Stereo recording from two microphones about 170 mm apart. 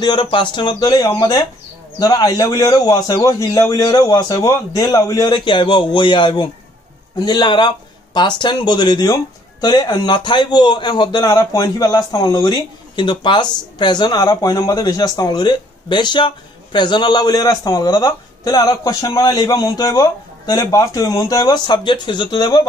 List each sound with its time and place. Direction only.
0.0 s speech: 25° left (ahead or behind)